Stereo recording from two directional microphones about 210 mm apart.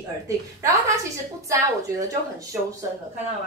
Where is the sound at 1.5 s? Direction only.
15° right (ahead or behind).